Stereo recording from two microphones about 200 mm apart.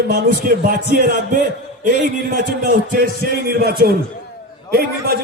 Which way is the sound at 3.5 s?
50° right (ahead or behind).